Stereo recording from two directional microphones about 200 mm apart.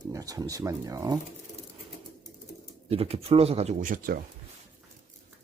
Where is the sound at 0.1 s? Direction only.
15° right (ahead or behind).